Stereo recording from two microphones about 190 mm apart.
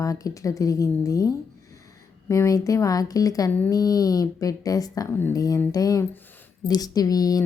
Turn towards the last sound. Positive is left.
turn(degrees=20)  # may be behind; listen again after turning